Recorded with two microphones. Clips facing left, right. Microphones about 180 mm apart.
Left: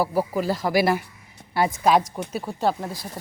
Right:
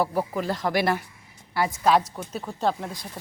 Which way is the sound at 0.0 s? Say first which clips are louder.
Left 2 dB; 5° left (ahead or behind).